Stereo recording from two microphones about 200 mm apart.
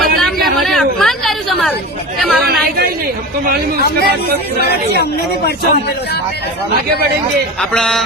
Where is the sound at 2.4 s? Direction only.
50° right (ahead or behind).